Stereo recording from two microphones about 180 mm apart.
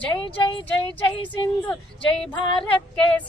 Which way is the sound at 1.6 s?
5° left (ahead or behind).